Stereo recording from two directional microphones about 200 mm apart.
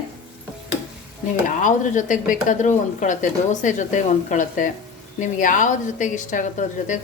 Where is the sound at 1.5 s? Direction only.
40° left (ahead or behind).